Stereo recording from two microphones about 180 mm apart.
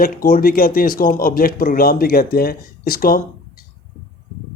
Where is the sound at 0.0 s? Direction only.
50° left (ahead or behind).